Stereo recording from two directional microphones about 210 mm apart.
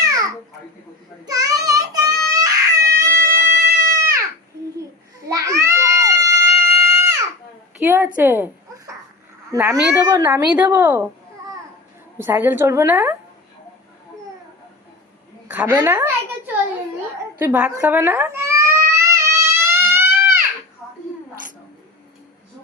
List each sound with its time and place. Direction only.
0.0 s babbling: 15° right (ahead or behind)
1.2 s baby cry: 15° right (ahead or behind)
3.8 s a sound: 15° right (ahead or behind)
5.3 s baby cry: 15° right (ahead or behind)
7.9 s a woman's voice: 10° right (ahead or behind)
15.5 s a woman's voice: 15° right (ahead or behind)
17.4 s cat: 10° right (ahead or behind)